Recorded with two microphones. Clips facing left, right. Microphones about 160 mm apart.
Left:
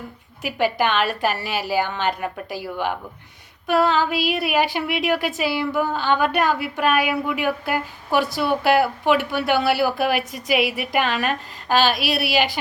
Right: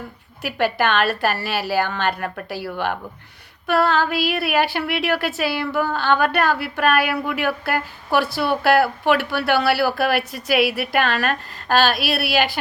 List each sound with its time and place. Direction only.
0.4 s a woman's voice: 15° left (ahead or behind)